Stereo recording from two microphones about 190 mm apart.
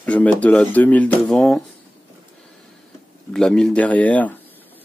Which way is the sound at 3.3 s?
5° left (ahead or behind).